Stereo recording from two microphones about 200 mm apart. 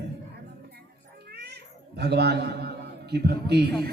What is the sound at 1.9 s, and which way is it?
A man's voice, 55° right (ahead or behind).